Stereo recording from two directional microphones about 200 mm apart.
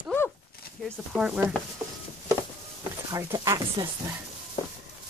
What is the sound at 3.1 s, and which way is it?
Speech, 15° right (ahead or behind).